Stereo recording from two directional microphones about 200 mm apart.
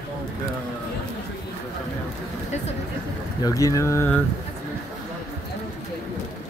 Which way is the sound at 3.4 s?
15° left (ahead or behind).